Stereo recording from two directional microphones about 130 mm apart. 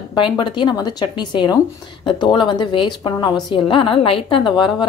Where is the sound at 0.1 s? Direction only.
35° left (ahead or behind).